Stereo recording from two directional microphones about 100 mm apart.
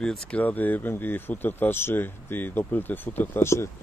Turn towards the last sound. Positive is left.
turn(degrees=25)  # may be behind; listen again after turning